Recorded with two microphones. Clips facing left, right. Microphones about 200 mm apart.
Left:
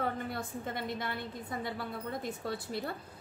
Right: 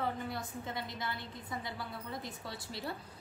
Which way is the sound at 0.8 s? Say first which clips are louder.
Left 5 dB; 55° left (ahead or behind).